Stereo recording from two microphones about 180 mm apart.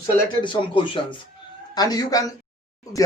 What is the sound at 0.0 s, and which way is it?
Speech, 25° left (ahead or behind).